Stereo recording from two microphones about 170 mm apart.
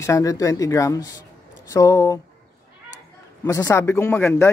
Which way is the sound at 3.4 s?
15° left (ahead or behind).